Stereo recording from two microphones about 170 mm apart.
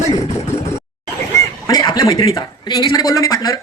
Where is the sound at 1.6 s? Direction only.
20° left (ahead or behind).